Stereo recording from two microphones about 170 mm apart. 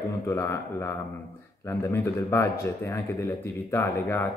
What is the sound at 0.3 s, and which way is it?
Speech, 15° left (ahead or behind).